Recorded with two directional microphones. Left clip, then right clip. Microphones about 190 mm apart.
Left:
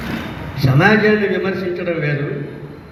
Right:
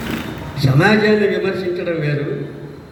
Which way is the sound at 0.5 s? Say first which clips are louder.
Left 1 dB; 20° right (ahead or behind).